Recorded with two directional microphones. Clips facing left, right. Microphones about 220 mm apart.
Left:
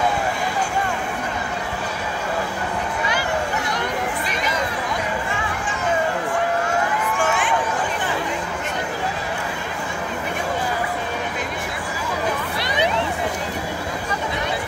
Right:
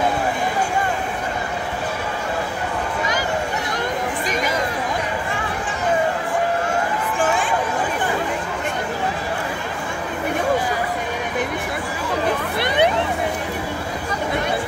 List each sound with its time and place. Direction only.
12.5 s hubbub: 55° right (ahead or behind)